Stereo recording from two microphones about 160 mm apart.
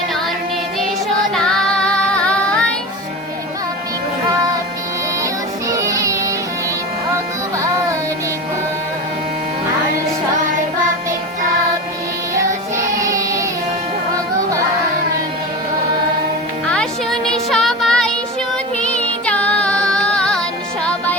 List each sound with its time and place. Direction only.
1.4 s child singing: 5° left (ahead or behind)
5.2 s music: 20° right (ahead or behind)
12.7 s music: 20° right (ahead or behind)
16.6 s music: 5° left (ahead or behind)